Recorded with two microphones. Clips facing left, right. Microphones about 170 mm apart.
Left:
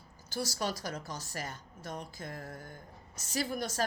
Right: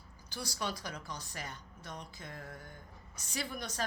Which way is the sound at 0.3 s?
40° left (ahead or behind).